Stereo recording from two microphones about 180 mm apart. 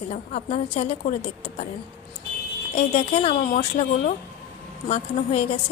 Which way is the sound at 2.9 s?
35° left (ahead or behind).